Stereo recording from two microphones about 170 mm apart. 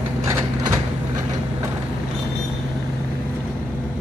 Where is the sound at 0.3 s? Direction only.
15° right (ahead or behind).